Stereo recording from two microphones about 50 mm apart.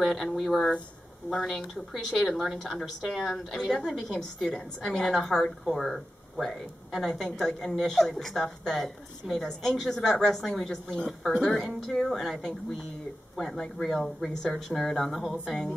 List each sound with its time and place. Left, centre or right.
0.0 s a woman's voice: centre
0.6 s a woman's voice: centre